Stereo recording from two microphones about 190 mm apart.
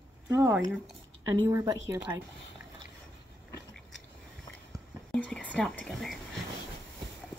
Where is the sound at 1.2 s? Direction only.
15° right (ahead or behind).